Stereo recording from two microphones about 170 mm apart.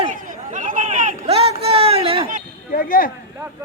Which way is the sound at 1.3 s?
35° right (ahead or behind).